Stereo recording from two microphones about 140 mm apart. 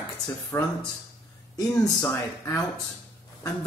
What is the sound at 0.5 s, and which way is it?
Speech, 20° left (ahead or behind).